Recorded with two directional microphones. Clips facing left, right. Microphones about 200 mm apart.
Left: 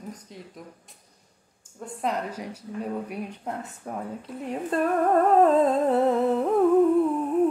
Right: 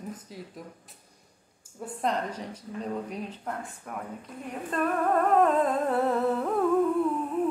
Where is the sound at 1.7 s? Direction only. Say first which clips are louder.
Right 1 dB; 10° right (ahead or behind).